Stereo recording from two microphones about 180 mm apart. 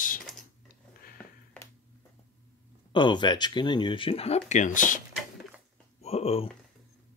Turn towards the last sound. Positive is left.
turn(degrees=35)  # may be behind; listen again after turning